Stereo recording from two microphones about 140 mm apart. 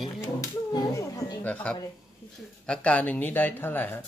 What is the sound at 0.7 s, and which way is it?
Speech, 25° left (ahead or behind).